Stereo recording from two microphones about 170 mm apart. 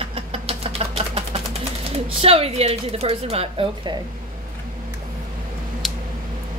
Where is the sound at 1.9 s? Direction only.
35° right (ahead or behind).